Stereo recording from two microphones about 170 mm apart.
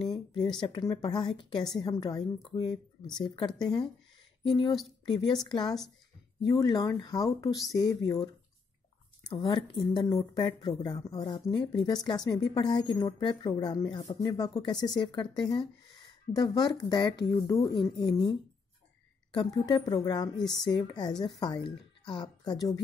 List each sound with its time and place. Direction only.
0.6 s a woman's voice: 25° left (ahead or behind)
2.7 s speech: 5° left (ahead or behind)
3.3 s a woman's voice: 30° left (ahead or behind)
9.3 s a woman's voice: 30° left (ahead or behind)